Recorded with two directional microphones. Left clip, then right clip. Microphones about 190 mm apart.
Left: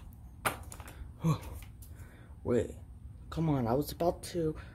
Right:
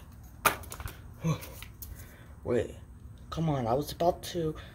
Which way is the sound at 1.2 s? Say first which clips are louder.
Even; 35° left (ahead or behind).